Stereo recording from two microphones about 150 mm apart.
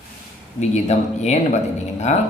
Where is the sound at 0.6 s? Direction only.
50° left (ahead or behind).